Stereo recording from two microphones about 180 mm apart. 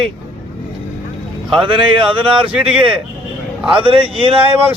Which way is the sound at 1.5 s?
30° right (ahead or behind).